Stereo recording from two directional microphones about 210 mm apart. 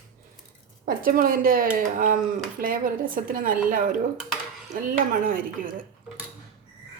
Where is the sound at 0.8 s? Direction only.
45° right (ahead or behind).